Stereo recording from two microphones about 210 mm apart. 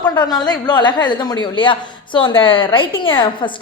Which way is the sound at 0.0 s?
20° left (ahead or behind).